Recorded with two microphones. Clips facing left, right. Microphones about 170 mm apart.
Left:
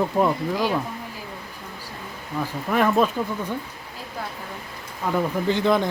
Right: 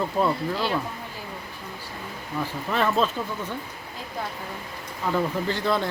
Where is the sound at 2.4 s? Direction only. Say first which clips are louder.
Left 4 dB; 10° left (ahead or behind).